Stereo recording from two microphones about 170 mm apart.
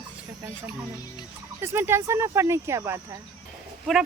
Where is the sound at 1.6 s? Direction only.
15° right (ahead or behind).